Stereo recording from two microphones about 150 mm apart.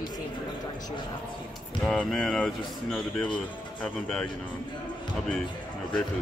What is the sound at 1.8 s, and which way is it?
Speech, centre (ahead or behind).